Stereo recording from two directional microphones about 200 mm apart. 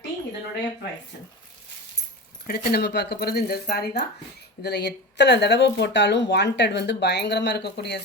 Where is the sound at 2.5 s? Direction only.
50° left (ahead or behind).